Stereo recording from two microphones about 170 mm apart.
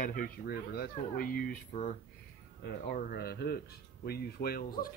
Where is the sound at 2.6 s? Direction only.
65° left (ahead or behind).